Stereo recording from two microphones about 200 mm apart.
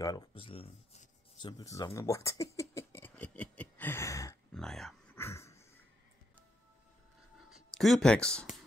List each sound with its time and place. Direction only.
0.0 s speech: 20° left (ahead or behind)
1.6 s speech: 15° left (ahead or behind)
2.0 s a sound: 15° left (ahead or behind)
4.6 s speech: centre (ahead or behind)
5.1 s dog: 15° left (ahead or behind)
7.5 s speech: centre (ahead or behind)